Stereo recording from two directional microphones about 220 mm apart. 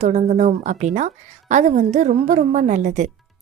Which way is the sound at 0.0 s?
30° right (ahead or behind).